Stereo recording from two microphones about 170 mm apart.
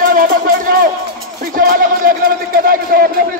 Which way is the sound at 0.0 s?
55° right (ahead or behind).